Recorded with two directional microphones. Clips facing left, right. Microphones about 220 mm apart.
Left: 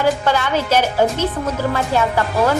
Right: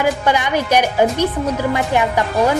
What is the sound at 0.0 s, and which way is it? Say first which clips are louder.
A woman's voice: even; 15° right (ahead or behind).